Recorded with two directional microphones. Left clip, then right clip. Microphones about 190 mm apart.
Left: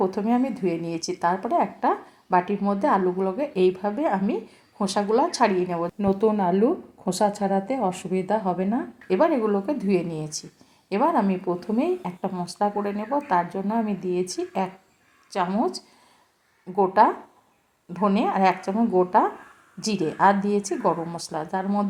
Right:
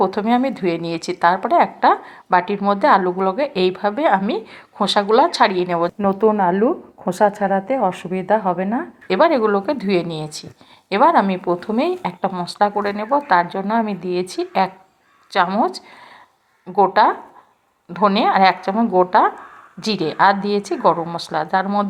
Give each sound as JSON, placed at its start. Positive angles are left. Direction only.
{"t": 0.1, "sound": "speech", "side_deg": -15}